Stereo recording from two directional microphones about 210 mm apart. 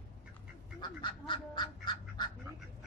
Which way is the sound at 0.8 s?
20° left (ahead or behind).